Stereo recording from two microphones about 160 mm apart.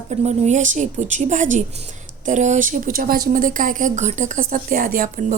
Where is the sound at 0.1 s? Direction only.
45° right (ahead or behind).